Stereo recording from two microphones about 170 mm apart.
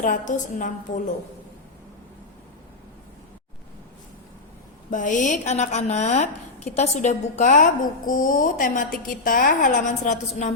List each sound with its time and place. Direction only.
0.0 s a woman's voice: 50° left (ahead or behind)
4.9 s a woman's voice: 50° left (ahead or behind)